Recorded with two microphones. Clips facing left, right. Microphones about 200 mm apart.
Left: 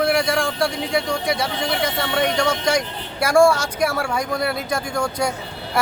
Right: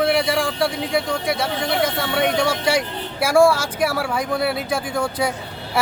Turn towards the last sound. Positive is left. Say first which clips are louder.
# right 1 dB
turn(degrees=-5)  # may be behind; listen again after turning